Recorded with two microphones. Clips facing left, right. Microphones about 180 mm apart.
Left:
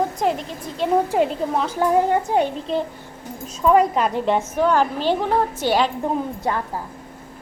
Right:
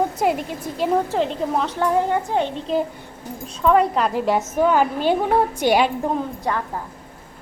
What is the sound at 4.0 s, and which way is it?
A woman's voice, centre (ahead or behind).